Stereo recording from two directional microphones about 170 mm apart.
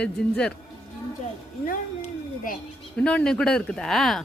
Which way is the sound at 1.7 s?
55° left (ahead or behind).